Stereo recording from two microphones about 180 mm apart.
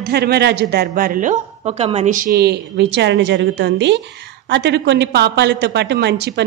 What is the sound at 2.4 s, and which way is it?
A woman's voice, 70° right (ahead or behind).